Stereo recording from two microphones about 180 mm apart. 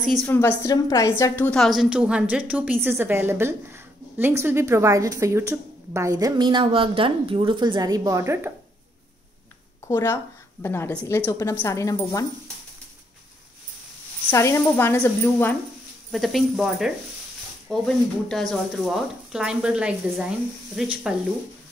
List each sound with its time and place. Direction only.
0.0 s speech: 5° left (ahead or behind)
0.4 s a woman's voice: 15° left (ahead or behind); by 8.5 s 15° right (ahead or behind)
9.8 s a woman's voice: 15° left (ahead or behind)
14.3 s a woman's voice: 15° left (ahead or behind)
16.1 s speech: centre (ahead or behind)